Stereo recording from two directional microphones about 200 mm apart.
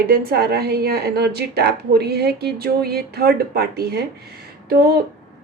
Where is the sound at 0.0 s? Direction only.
50° right (ahead or behind).